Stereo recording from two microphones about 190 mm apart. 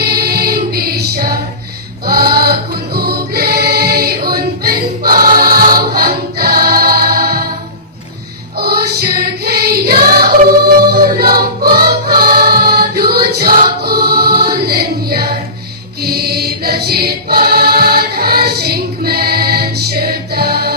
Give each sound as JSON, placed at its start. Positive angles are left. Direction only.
{"t": 0.0, "sound": "music", "side_deg": -55}
{"t": 2.0, "sound": "choir", "side_deg": -55}
{"t": 8.5, "sound": "choir", "side_deg": -55}
{"t": 16.0, "sound": "music", "side_deg": -55}